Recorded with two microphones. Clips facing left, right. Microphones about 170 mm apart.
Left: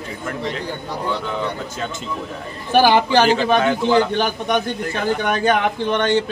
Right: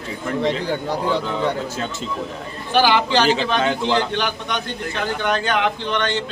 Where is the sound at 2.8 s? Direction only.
50° left (ahead or behind).